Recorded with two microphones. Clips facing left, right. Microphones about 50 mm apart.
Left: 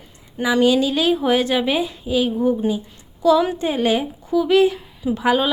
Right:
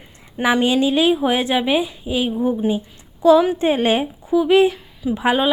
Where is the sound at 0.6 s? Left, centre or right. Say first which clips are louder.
Left 2 dB; right.